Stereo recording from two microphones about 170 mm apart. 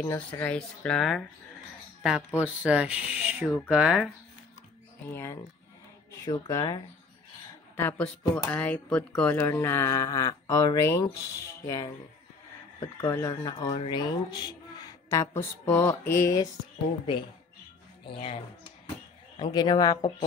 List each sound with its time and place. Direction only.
0.0 s speech: 15° left (ahead or behind); by 4.1 s 5° right (ahead or behind)
5.0 s speech: 15° left (ahead or behind)
18.0 s speech: 30° left (ahead or behind)